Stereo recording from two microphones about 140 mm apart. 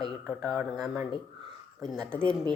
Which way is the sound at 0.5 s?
25° right (ahead or behind).